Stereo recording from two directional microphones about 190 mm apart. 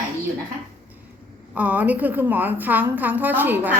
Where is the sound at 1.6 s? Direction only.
10° right (ahead or behind).